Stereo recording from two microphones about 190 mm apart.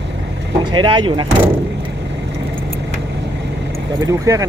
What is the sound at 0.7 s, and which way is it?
Speech, 25° right (ahead or behind).